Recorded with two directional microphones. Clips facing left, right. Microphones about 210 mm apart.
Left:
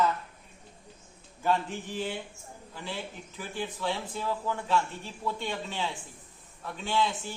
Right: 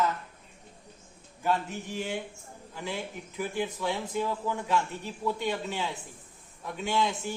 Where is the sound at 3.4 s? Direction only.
15° right (ahead or behind).